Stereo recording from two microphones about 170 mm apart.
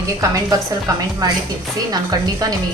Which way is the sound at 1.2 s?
20° right (ahead or behind).